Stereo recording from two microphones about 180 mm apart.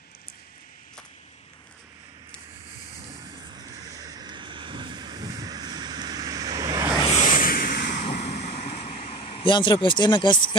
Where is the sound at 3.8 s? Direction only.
20° right (ahead or behind).